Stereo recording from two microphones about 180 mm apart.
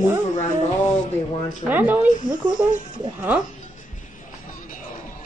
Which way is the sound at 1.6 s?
10° right (ahead or behind).